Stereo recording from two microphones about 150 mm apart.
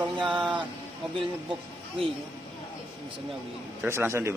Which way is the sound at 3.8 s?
15° right (ahead or behind).